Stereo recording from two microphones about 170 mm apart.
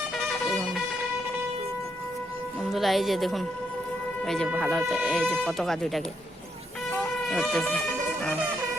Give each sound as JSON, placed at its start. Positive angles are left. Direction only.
{"t": 2.7, "sound": "speech", "side_deg": 0}
{"t": 4.6, "sound": "speech", "side_deg": 0}
{"t": 7.3, "sound": "speech", "side_deg": 5}